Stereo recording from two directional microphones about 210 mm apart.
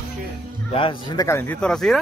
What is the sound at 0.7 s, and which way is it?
Speech, 25° left (ahead or behind).